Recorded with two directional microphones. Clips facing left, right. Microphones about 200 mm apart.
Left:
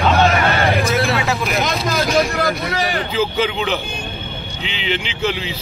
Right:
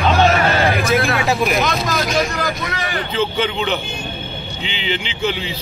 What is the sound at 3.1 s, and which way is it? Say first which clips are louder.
Speech: even; centre (ahead or behind).